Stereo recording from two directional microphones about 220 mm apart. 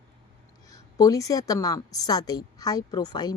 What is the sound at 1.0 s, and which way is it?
Speech, 15° left (ahead or behind).